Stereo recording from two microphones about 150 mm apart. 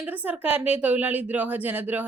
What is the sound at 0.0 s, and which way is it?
Speech, 10° right (ahead or behind).